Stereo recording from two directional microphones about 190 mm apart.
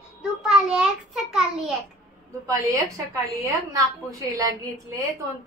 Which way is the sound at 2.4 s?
15° right (ahead or behind).